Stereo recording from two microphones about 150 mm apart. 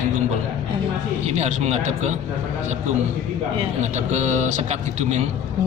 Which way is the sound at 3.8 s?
50° right (ahead or behind).